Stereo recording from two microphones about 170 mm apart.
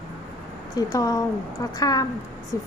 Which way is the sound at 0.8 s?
20° left (ahead or behind).